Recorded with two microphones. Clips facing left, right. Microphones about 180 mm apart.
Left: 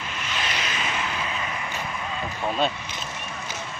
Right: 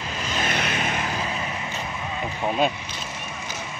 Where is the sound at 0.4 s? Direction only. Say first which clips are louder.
Right 5 dB; 55° right (ahead or behind).